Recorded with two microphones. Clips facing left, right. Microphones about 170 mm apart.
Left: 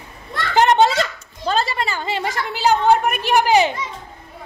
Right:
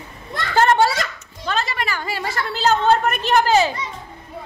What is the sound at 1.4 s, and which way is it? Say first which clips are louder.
A woman's voice: left 3 dB; 30° left (ahead or behind).